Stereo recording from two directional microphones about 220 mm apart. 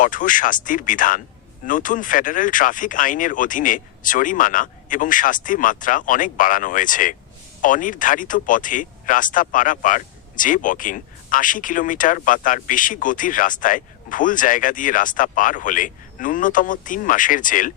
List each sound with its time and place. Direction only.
0.0 s speech: 35° left (ahead or behind)